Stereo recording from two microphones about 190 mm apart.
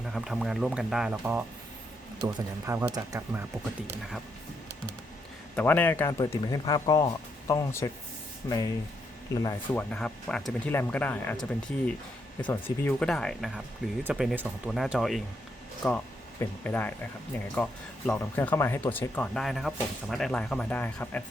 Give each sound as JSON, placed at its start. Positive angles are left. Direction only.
{"t": 0.1, "sound": "speech", "side_deg": 0}
{"t": 5.5, "sound": "speech", "side_deg": 10}
{"t": 9.9, "sound": "speech", "side_deg": 5}
{"t": 16.4, "sound": "speech", "side_deg": 10}